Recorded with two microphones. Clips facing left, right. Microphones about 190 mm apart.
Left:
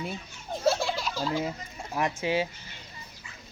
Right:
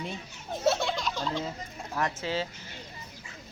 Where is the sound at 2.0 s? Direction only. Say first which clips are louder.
Left 3 dB; 15° left (ahead or behind).